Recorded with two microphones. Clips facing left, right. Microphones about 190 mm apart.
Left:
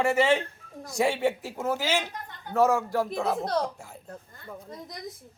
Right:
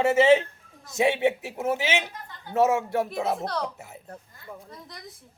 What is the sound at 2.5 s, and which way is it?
Speech, 25° right (ahead or behind).